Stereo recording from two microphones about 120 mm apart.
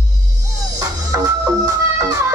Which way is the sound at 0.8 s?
30° right (ahead or behind).